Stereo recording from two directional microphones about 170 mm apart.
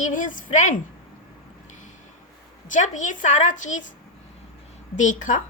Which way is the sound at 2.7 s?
45° left (ahead or behind).